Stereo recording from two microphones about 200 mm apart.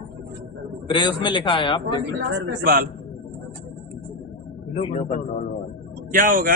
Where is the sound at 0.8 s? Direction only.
25° left (ahead or behind).